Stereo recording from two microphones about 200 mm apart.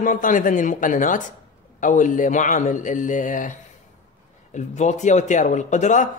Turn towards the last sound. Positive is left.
turn(degrees=35)  # may be behind; listen again after turning